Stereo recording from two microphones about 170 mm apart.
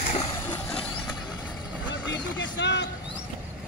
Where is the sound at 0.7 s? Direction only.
5° left (ahead or behind).